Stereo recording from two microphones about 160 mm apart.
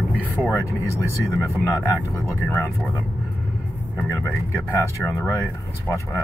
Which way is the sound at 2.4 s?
10° left (ahead or behind).